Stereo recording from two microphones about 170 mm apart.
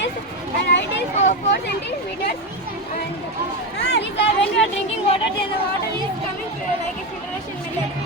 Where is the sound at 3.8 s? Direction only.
90° left.